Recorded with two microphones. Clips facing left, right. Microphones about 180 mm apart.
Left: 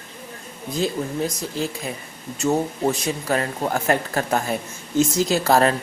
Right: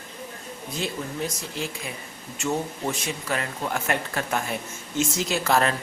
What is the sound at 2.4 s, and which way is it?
Speech, 40° left (ahead or behind).